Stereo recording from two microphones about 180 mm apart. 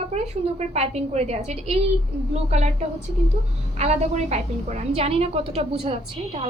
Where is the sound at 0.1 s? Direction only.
40° right (ahead or behind).